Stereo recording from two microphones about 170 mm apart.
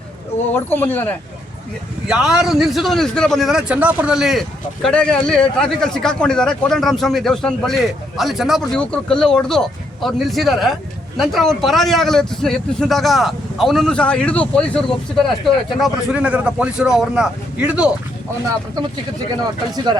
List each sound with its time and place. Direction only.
0.5 s speech: 10° left (ahead or behind)
2.0 s a man's voice: 5° right (ahead or behind)
19.7 s speech: 25° right (ahead or behind)